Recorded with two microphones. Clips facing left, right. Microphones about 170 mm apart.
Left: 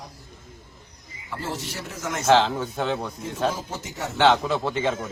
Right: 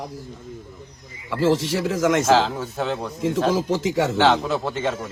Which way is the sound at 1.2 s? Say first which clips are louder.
Right 12 dB; 90° right.